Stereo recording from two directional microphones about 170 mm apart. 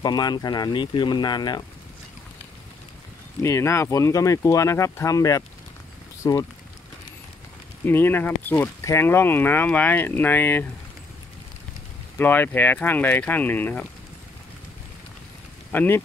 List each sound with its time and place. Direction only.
0.0 s speech: 25° left (ahead or behind)
3.4 s speech: 15° left (ahead or behind)
7.8 s speech: 10° left (ahead or behind)
12.2 s speech: 10° left (ahead or behind)
15.7 s speech: 10° left (ahead or behind)